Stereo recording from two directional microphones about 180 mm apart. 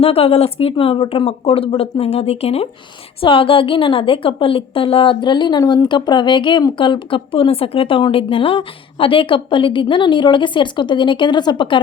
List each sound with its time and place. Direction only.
0.0 s a woman's voice: 35° left (ahead or behind)